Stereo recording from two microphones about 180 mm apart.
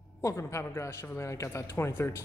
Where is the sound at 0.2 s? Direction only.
15° left (ahead or behind).